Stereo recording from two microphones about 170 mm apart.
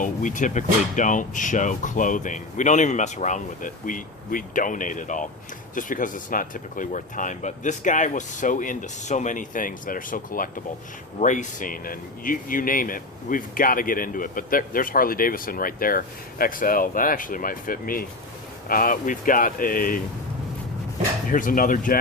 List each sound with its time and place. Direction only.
0.0 s speech: 50° left (ahead or behind)
21.2 s speech: 50° left (ahead or behind)